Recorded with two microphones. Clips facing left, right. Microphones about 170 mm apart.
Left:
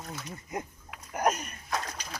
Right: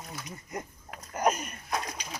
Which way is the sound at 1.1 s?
5° left (ahead or behind).